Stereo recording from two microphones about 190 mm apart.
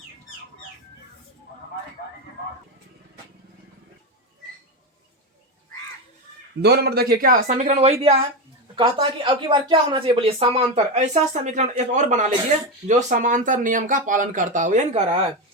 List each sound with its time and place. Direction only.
6.6 s speech: 60° right (ahead or behind); by 15.2 s 40° right (ahead or behind)